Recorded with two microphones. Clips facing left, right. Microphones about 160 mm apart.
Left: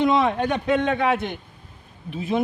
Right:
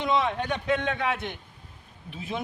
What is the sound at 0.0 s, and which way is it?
A man's voice, 50° left (ahead or behind).